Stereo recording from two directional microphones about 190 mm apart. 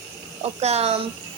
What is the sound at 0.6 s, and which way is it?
Speech, 35° right (ahead or behind).